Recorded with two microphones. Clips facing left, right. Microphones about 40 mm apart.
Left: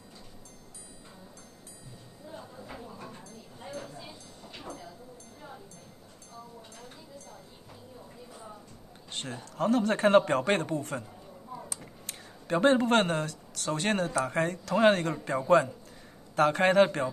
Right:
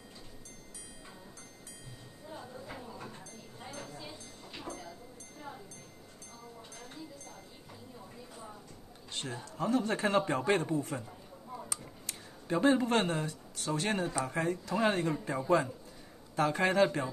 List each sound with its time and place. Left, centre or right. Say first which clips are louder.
9.2 s speech: left 5 dB; left
12.1 s speech: left 4 dB; left
13.2 s speech: left 3 dB; left
13.7 s speech: left 3 dB; left
16.3 s speech: left 5 dB; left